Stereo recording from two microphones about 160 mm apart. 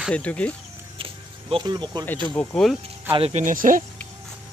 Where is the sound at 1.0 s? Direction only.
35° right (ahead or behind).